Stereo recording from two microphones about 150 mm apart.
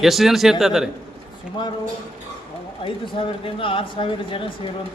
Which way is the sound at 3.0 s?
35° left (ahead or behind).